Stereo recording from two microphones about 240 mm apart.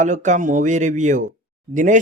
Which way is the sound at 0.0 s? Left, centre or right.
Right.